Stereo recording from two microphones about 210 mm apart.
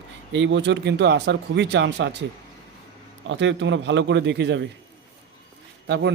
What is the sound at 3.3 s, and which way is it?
Speech, 60° right (ahead or behind).